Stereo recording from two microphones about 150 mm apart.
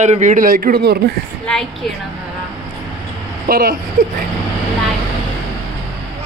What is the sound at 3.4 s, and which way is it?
Speech, 75° right (ahead or behind).